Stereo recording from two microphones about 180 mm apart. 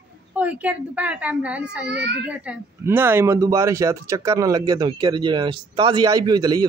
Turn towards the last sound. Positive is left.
turn(degrees=-20)  # may be behind; listen again after turning